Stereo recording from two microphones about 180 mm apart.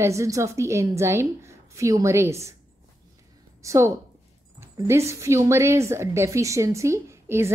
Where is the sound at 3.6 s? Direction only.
15° right (ahead or behind).